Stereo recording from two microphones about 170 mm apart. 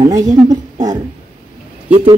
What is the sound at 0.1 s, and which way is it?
Speech, 20° right (ahead or behind).